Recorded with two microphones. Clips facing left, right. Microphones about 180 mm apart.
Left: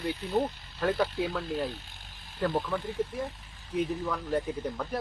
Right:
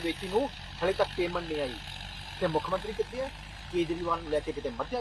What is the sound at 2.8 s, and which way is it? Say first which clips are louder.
Speech: even; 90° right.